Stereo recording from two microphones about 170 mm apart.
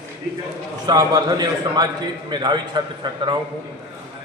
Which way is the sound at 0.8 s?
25° right (ahead or behind).